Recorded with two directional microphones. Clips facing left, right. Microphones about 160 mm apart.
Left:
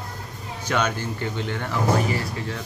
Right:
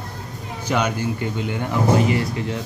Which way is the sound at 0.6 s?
10° right (ahead or behind).